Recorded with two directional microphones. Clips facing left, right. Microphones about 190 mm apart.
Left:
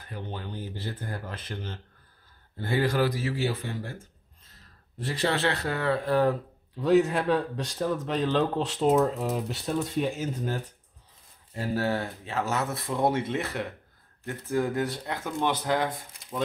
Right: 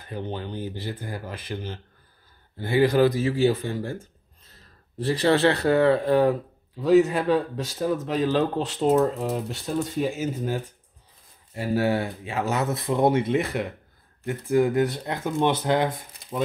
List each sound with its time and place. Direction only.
0.1 s speech: 20° right (ahead or behind)
5.0 s speech: 35° right (ahead or behind); by 6.3 s 20° right (ahead or behind)
6.8 s a man's voice: centre (ahead or behind)
11.6 s speech: 10° right (ahead or behind)